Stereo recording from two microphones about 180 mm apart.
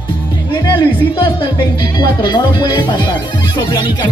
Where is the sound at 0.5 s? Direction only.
25° left (ahead or behind).